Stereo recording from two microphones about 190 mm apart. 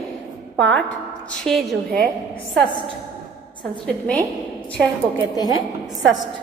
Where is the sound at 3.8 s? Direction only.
5° left (ahead or behind).